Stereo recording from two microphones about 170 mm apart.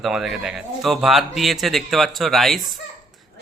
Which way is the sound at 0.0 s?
Centre (ahead or behind).